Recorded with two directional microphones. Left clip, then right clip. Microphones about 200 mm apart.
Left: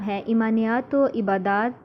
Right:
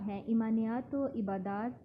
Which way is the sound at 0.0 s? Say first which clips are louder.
Left 12 dB; 20° left (ahead or behind).